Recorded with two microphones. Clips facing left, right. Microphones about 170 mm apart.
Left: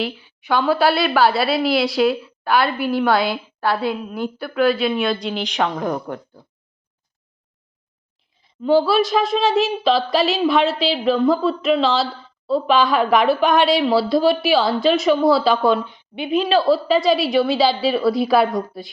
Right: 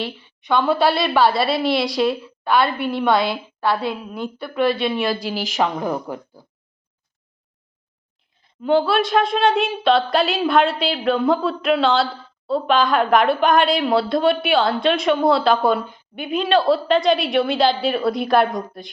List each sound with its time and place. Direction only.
0.2 s a woman's voice: 5° left (ahead or behind)
8.4 s a woman's voice: centre (ahead or behind)
15.9 s a woman's voice: 45° right (ahead or behind)
16.3 s a woman's voice: centre (ahead or behind)